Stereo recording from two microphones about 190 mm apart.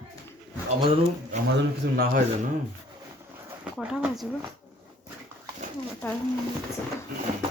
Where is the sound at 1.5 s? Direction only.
55° right (ahead or behind).